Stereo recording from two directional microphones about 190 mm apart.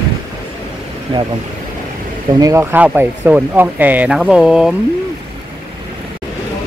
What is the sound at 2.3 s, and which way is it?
Speech, 15° right (ahead or behind).